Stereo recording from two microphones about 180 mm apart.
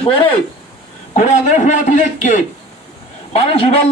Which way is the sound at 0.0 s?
30° left (ahead or behind).